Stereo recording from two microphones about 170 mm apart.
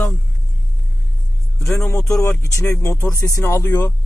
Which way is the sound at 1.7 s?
15° left (ahead or behind).